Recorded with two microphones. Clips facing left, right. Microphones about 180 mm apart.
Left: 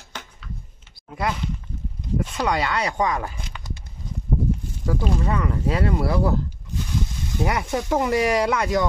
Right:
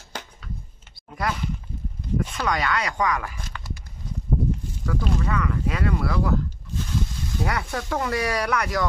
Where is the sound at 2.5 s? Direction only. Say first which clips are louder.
Left 1 dB; 25° left (ahead or behind).